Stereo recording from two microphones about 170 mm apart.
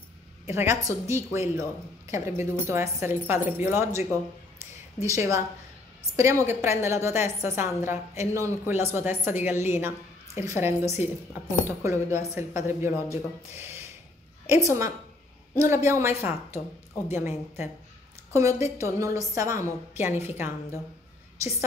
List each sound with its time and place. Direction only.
0.5 s a woman's voice: 15° right (ahead or behind)
5.0 s a woman's voice: 20° right (ahead or behind)